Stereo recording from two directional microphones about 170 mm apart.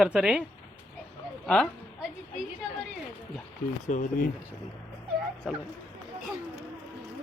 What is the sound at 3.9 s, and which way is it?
Speech, 50° left (ahead or behind).